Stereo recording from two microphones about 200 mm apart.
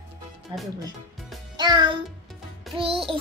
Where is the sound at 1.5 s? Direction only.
20° right (ahead or behind).